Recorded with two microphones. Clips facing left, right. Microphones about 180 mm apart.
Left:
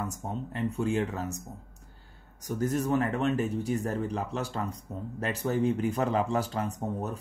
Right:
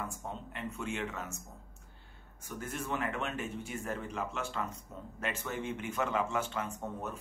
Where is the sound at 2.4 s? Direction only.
40° left (ahead or behind).